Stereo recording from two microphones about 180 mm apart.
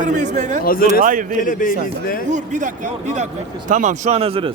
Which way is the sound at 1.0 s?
45° right (ahead or behind).